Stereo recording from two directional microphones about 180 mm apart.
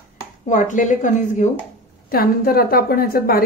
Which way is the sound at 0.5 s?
45° left (ahead or behind).